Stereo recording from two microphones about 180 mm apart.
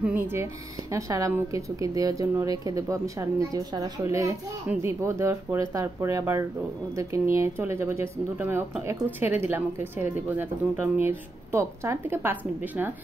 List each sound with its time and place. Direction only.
0.0 s speech: 10° right (ahead or behind)